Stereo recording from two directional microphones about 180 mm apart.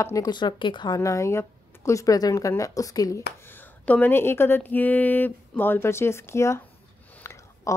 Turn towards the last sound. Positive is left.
turn(degrees=15)  # may be behind; listen again after turning